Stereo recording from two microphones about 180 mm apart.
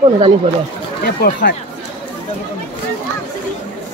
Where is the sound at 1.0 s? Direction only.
60° left (ahead or behind).